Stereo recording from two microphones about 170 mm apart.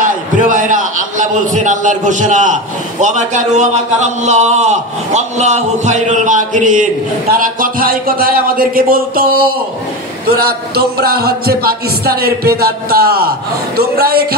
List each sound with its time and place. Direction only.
0.0 s a man's voice: 50° right (ahead or behind)